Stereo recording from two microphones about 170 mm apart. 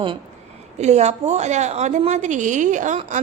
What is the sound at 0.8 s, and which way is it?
A woman's voice, 40° right (ahead or behind).